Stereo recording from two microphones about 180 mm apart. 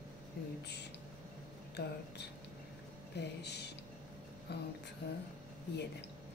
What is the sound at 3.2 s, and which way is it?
A woman's voice, 70° left (ahead or behind).